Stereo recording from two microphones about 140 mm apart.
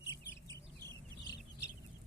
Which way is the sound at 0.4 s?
20° left (ahead or behind).